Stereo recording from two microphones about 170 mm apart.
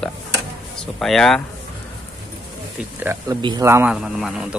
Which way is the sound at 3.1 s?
15° right (ahead or behind).